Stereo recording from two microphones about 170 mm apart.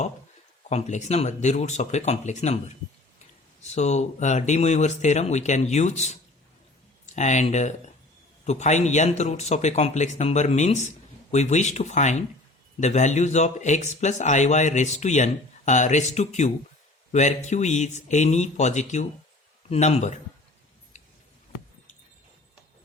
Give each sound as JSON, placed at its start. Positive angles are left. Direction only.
{"t": 0.7, "sound": "a man's voice", "side_deg": 40}